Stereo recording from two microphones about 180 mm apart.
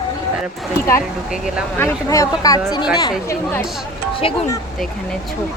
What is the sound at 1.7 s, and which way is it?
Speech, 15° left (ahead or behind).